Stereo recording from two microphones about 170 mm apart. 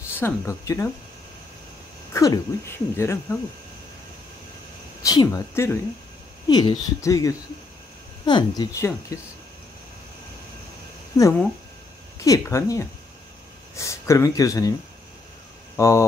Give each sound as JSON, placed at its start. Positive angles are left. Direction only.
{"t": 0.1, "sound": "speech", "side_deg": 15}
{"t": 2.1, "sound": "speech", "side_deg": 15}
{"t": 5.0, "sound": "speech", "side_deg": 20}
{"t": 6.5, "sound": "speech", "side_deg": 25}
{"t": 12.2, "sound": "speech", "side_deg": 15}
{"t": 15.7, "sound": "speech", "side_deg": 15}